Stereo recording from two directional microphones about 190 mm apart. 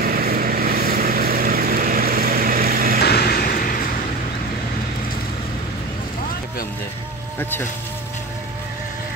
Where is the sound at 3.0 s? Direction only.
55° left (ahead or behind).